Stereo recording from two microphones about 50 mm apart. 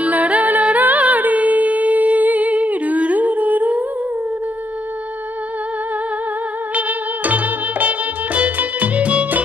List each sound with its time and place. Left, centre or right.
0.0 s music: right
6.7 s music: right